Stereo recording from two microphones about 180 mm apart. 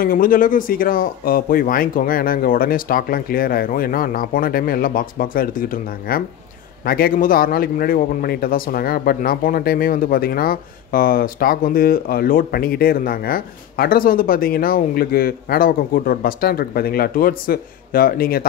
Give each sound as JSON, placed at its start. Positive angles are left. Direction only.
{"t": 0.0, "sound": "a man's voice", "side_deg": 50}